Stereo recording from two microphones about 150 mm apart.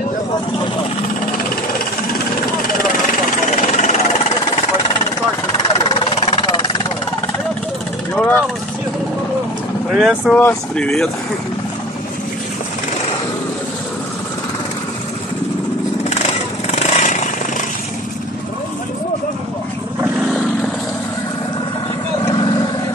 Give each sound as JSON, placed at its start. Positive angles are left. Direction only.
{"t": 3.6, "sound": "vehicle", "side_deg": 50}
{"t": 5.9, "sound": "vehicle", "side_deg": 35}
{"t": 8.1, "sound": "vehicle", "side_deg": 10}
{"t": 9.8, "sound": "speech", "side_deg": -5}
{"t": 10.3, "sound": "speech", "side_deg": 10}
{"t": 16.7, "sound": "vehicle", "side_deg": 50}
{"t": 20.2, "sound": "vehicle", "side_deg": 0}
{"t": 22.2, "sound": "vehicle", "side_deg": 30}